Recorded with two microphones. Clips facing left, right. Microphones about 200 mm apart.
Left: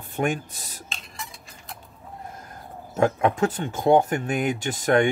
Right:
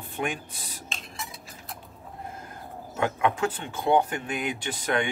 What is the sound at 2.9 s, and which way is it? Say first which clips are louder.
Speech: left 5 dB; 40° left (ahead or behind).